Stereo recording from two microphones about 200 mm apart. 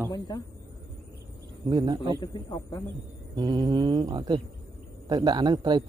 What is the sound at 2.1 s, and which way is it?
Speech, 20° left (ahead or behind).